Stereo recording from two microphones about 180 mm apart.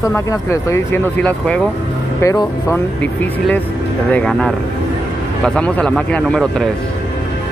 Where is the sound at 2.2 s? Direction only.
15° left (ahead or behind).